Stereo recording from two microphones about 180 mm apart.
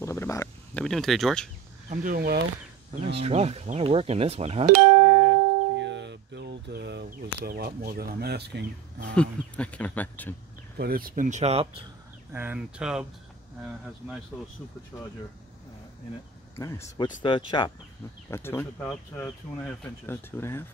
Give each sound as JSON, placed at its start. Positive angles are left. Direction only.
{"t": 0.0, "sound": "a sound", "side_deg": 15}
{"t": 0.8, "sound": "speech", "side_deg": 0}
{"t": 1.9, "sound": "speech", "side_deg": -50}
{"t": 3.2, "sound": "speech", "side_deg": -35}
{"t": 5.1, "sound": "music", "side_deg": -75}
{"t": 7.4, "sound": "speech", "side_deg": -60}
{"t": 9.1, "sound": "speech", "side_deg": 5}
{"t": 10.8, "sound": "speech", "side_deg": -55}
{"t": 12.3, "sound": "speech", "side_deg": -10}
{"t": 16.5, "sound": "speech", "side_deg": 15}
{"t": 18.3, "sound": "speech", "side_deg": 15}